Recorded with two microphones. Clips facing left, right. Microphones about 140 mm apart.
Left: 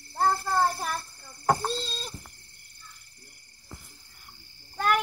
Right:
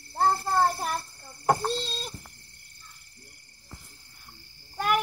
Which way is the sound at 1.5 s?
15° right (ahead or behind).